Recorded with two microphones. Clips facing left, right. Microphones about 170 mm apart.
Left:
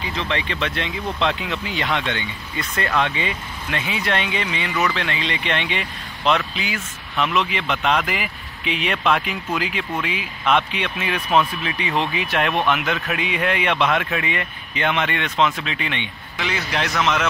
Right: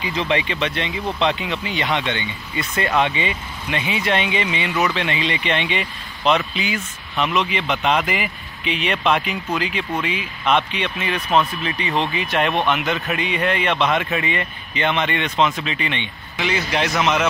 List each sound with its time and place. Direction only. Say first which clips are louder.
0.1 s speech: right 5 dB; 15° right (ahead or behind)
0.5 s speech: right 2 dB; centre (ahead or behind)